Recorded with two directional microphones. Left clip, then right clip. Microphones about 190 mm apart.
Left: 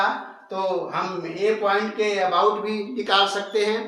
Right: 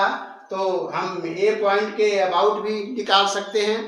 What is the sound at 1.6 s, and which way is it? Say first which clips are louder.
A man's voice: right 2 dB; 10° right (ahead or behind).